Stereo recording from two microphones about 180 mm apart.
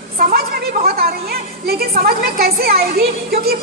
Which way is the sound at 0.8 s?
55° right (ahead or behind).